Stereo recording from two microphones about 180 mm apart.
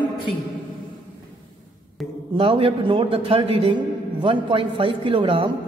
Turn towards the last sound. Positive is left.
turn(degrees=-30)  # may be behind; listen again after turning